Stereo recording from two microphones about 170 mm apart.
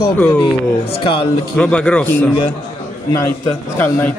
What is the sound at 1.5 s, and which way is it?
Speech, 5° left (ahead or behind).